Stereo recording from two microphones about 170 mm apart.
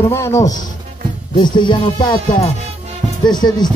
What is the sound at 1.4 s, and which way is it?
Speech, 25° left (ahead or behind).